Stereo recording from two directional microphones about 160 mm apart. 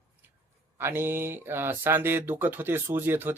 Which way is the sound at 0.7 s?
15° right (ahead or behind).